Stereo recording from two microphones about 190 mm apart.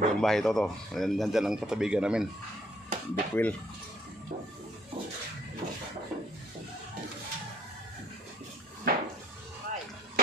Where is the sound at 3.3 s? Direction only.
10° left (ahead or behind).